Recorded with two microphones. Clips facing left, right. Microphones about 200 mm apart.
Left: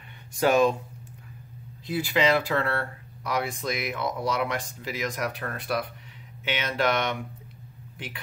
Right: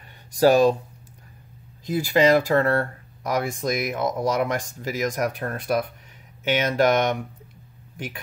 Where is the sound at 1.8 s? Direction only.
45° right (ahead or behind).